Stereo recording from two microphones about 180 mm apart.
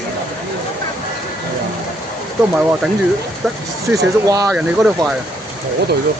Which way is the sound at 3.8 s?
20° right (ahead or behind).